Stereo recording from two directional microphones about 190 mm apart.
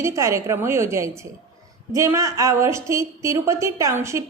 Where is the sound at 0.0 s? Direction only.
15° right (ahead or behind).